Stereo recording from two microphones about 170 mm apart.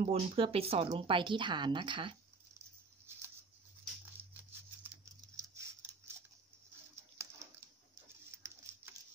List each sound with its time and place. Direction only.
0.0 s speech: 35° right (ahead or behind)
5.3 s patter: 15° right (ahead or behind)
7.2 s pigeon: 15° right (ahead or behind)